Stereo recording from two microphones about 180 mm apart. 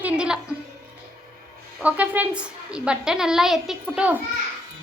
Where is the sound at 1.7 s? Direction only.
10° right (ahead or behind).